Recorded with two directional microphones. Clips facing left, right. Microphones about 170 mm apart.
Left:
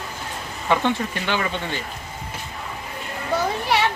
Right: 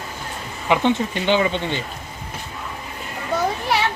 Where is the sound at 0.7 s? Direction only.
20° right (ahead or behind).